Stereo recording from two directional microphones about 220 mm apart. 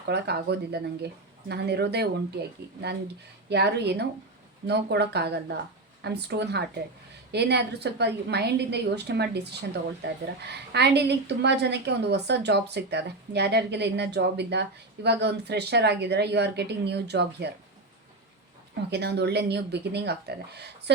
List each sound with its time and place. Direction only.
0.1 s a woman's voice: 50° right (ahead or behind)
3.5 s a woman's voice: 50° right (ahead or behind)
18.9 s a woman's voice: 50° right (ahead or behind)